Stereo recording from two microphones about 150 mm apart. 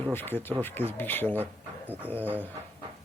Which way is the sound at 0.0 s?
15° left (ahead or behind).